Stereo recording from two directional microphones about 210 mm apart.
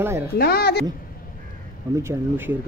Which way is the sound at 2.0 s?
10° right (ahead or behind).